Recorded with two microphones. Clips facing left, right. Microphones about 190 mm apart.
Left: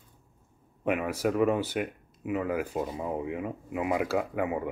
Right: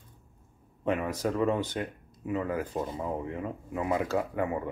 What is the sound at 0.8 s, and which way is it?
Speech, 10° left (ahead or behind).